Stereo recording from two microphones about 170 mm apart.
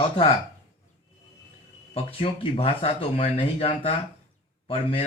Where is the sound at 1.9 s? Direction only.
35° left (ahead or behind).